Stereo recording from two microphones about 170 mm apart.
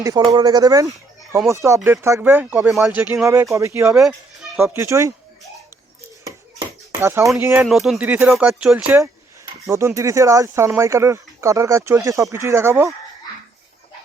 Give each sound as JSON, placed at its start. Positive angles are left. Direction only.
{"t": 0.0, "sound": "speech", "side_deg": -25}
{"t": 3.9, "sound": "a child's voice", "side_deg": 0}
{"t": 4.6, "sound": "speech", "side_deg": -15}
{"t": 6.2, "sound": "a sound", "side_deg": -15}
{"t": 7.3, "sound": "speech", "side_deg": -15}
{"t": 7.6, "sound": "speech", "side_deg": 0}
{"t": 9.6, "sound": "speech", "side_deg": -15}